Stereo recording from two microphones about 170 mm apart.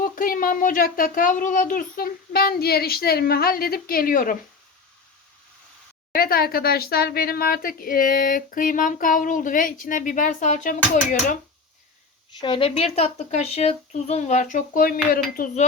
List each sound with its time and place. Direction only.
0.0 s speech: 55° left (ahead or behind)
6.1 s a woman's voice: 60° left (ahead or behind)
12.4 s speech: 30° left (ahead or behind); by 15.2 s 55° left (ahead or behind)